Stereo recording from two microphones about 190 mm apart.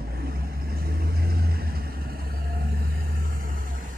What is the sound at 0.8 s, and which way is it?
Vehicle, 50° right (ahead or behind).